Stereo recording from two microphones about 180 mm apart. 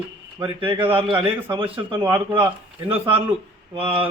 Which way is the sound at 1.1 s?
10° right (ahead or behind).